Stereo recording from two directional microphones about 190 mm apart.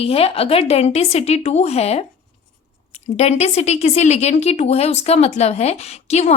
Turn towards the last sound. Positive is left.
turn(degrees=35)  # may be behind; listen again after turning